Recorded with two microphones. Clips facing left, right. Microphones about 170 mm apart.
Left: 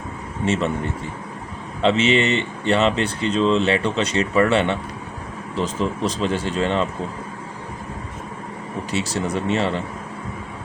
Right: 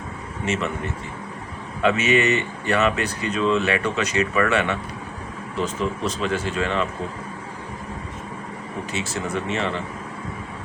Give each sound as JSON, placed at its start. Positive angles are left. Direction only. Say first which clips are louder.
{"t": 0.4, "sound": "speech", "louder": "left 4 dB", "side_deg": 35}
{"t": 1.8, "sound": "speech", "louder": "left 2 dB", "side_deg": 25}
{"t": 8.9, "sound": "speech", "louder": "left 4 dB", "side_deg": 35}